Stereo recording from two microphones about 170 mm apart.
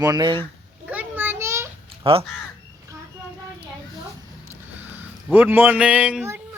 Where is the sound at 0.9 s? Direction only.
10° right (ahead or behind).